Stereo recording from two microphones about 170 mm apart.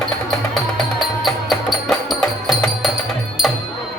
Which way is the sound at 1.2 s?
Centre (ahead or behind).